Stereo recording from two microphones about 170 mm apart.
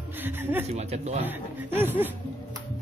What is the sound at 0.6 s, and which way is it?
Speech, 40° right (ahead or behind).